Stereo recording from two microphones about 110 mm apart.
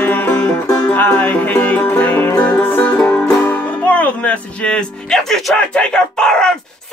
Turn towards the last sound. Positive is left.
turn(degrees=5)  # may be behind; listen again after turning